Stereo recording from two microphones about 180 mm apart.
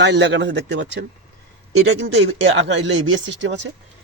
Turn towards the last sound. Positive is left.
turn(degrees=-85)